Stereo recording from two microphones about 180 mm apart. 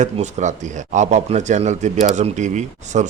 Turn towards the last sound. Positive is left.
turn(degrees=-40)  # may be behind; listen again after turning